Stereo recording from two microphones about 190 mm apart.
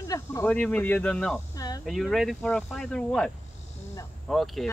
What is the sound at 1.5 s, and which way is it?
Speech, 20° left (ahead or behind).